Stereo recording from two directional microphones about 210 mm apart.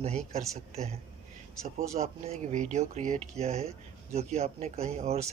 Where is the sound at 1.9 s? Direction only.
30° right (ahead or behind).